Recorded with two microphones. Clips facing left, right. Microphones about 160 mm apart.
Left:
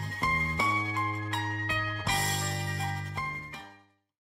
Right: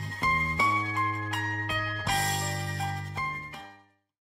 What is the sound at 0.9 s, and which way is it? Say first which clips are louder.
Music: right 1 dB; 20° left (ahead or behind).